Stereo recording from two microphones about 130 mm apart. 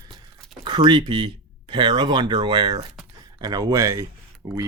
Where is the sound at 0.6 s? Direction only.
35° right (ahead or behind).